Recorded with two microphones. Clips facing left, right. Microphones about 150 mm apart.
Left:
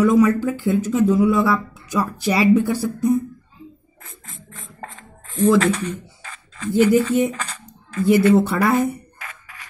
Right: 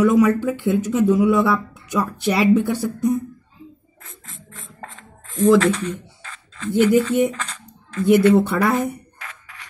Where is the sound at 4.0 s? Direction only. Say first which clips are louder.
Left 2 dB; 5° left (ahead or behind).